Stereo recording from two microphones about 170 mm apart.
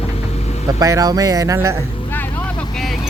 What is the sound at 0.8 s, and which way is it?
Speech, 20° right (ahead or behind).